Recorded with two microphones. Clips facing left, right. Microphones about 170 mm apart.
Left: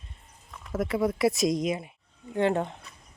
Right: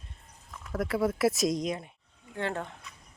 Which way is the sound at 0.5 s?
Centre (ahead or behind).